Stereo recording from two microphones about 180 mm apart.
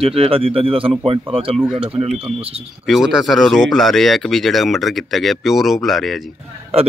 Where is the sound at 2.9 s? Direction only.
Centre (ahead or behind).